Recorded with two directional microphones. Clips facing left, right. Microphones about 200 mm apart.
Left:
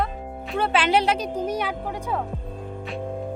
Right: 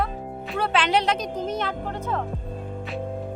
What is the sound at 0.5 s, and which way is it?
A woman's voice, 5° left (ahead or behind).